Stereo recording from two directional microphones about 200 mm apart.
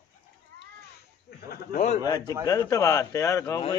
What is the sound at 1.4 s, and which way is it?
Speech, 45° left (ahead or behind).